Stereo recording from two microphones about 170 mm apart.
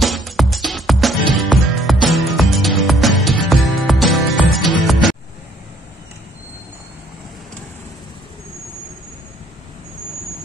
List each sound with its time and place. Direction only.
0.0 s music: centre (ahead or behind)